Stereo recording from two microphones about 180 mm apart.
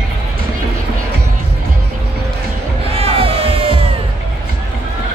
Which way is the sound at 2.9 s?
35° right (ahead or behind).